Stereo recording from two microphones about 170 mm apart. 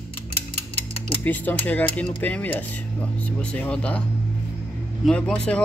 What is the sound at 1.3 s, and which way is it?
Speech, 10° left (ahead or behind).